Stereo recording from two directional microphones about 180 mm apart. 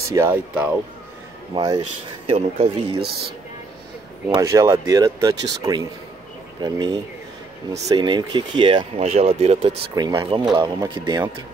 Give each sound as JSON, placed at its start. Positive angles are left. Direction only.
{"t": 0.1, "sound": "speech", "side_deg": -15}
{"t": 1.5, "sound": "speech", "side_deg": -25}
{"t": 4.4, "sound": "speech", "side_deg": -15}
{"t": 9.9, "sound": "speech", "side_deg": -25}